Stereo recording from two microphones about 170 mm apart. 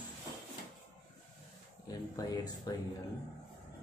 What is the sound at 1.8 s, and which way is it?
Speech, 20° left (ahead or behind).